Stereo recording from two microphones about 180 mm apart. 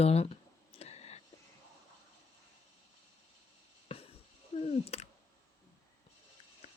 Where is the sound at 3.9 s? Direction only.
30° left (ahead or behind).